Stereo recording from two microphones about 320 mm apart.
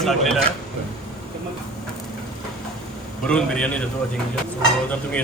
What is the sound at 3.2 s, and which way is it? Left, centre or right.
Speech, centre.